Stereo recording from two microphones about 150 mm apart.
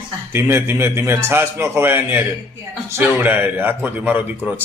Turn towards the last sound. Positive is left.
turn(degrees=-10)  # may be behind; listen again after turning